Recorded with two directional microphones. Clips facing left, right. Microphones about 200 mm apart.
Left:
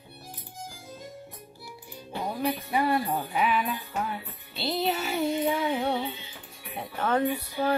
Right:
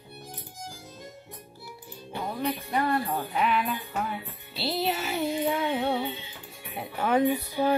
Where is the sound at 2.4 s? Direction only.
10° left (ahead or behind).